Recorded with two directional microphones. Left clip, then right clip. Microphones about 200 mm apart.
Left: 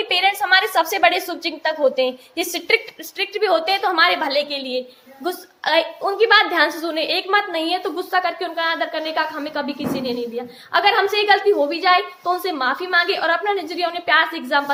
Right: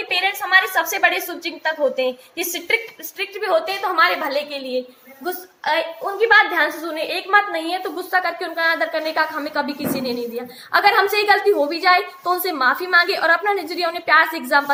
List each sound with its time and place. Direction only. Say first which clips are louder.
0.1 s a woman's voice: even; 40° left (ahead or behind); by 8.3 s 25° left (ahead or behind)
8.4 s a woman's voice: right 2 dB; 5° left (ahead or behind)